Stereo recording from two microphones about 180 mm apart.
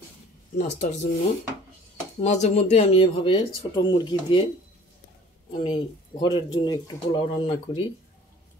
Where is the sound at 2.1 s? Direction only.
40° left (ahead or behind).